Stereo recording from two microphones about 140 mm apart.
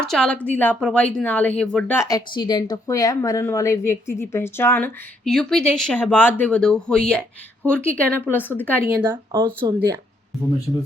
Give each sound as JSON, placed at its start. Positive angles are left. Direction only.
{"t": 0.0, "sound": "a woman's voice", "side_deg": 5}
{"t": 2.0, "sound": "speech", "side_deg": 30}
{"t": 5.2, "sound": "a woman's voice", "side_deg": 5}
{"t": 9.0, "sound": "speech", "side_deg": -30}